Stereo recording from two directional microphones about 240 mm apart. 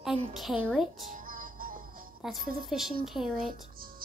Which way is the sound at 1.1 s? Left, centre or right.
Right.